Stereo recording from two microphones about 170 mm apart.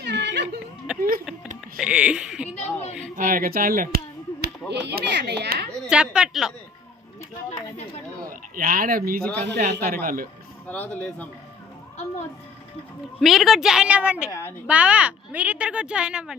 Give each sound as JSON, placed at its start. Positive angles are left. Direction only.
{"t": 0.0, "sound": "a sound", "side_deg": -90}
{"t": 0.9, "sound": "a woman's voice", "side_deg": -5}
{"t": 2.5, "sound": "a sound", "side_deg": 40}
{"t": 3.2, "sound": "speech", "side_deg": -55}
{"t": 5.9, "sound": "a woman's voice", "side_deg": -5}
{"t": 8.2, "sound": "speech", "side_deg": -55}
{"t": 10.7, "sound": "a man's voice", "side_deg": 10}
{"t": 13.1, "sound": "a woman's voice", "side_deg": 0}
{"t": 14.3, "sound": "a man's voice", "side_deg": 15}
{"t": 14.7, "sound": "a woman's voice", "side_deg": -10}